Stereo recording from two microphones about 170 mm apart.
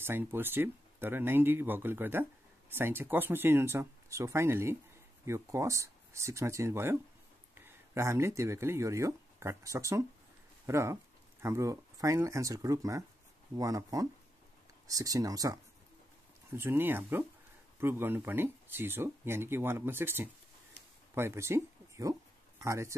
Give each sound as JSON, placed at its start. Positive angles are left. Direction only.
{"t": 0.0, "sound": "speech", "side_deg": -15}